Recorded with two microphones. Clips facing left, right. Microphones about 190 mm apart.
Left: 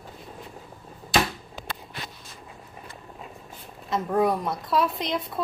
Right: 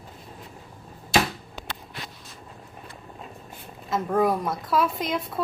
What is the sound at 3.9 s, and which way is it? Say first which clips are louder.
A woman's voice: even; centre (ahead or behind).